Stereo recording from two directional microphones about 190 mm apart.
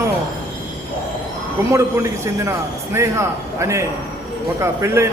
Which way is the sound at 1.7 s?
15° right (ahead or behind).